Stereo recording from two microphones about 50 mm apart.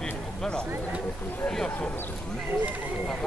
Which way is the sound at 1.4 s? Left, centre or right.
Centre.